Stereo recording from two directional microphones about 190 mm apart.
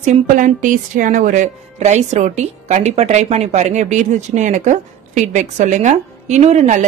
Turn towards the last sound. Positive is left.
turn(degrees=-35)  # may be behind; listen again after turning